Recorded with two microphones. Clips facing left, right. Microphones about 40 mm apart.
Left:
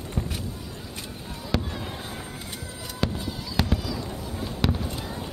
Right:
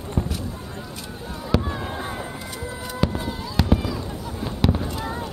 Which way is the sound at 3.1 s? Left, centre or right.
Right.